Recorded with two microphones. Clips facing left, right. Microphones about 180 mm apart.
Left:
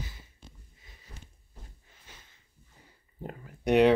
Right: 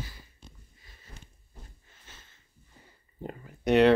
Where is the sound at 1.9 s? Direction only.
10° left (ahead or behind).